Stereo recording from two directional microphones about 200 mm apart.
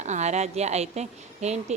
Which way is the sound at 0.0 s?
35° right (ahead or behind).